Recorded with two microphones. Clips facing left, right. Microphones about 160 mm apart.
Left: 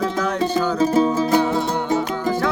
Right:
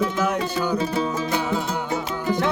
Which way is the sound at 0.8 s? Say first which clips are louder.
Left 7 dB; 40° left (ahead or behind).